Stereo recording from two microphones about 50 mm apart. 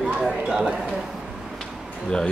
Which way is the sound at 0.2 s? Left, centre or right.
Centre.